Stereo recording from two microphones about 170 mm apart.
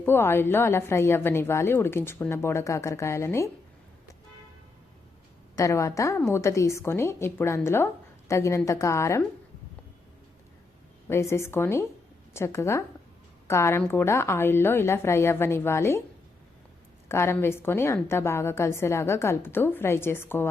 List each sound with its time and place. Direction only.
0.0 s a woman's voice: 15° left (ahead or behind)
5.5 s a woman's voice: 20° left (ahead or behind)
11.1 s a woman's voice: 15° left (ahead or behind)
17.1 s a woman's voice: 15° left (ahead or behind)